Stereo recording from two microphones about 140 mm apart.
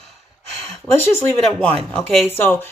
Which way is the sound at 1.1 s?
5° left (ahead or behind).